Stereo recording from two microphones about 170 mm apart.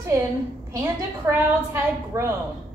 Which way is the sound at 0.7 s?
15° right (ahead or behind).